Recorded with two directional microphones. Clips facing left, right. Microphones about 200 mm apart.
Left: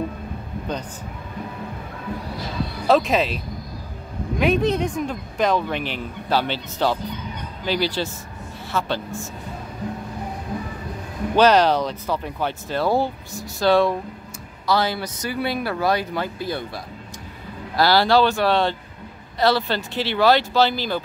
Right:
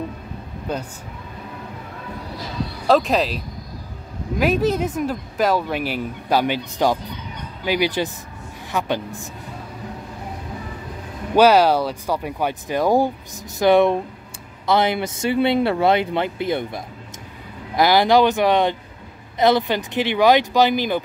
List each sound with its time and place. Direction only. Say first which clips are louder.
0.7 s speech: right 2 dB; 5° right (ahead or behind)
2.9 s speech: right 1 dB; centre (ahead or behind)
4.4 s speech: right 1 dB; 5° right (ahead or behind)
11.3 s speech: right 2 dB; 10° right (ahead or behind)